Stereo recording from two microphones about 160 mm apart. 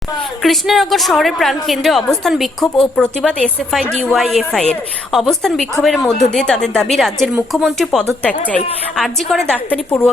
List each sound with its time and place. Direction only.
0.4 s a woman's voice: centre (ahead or behind)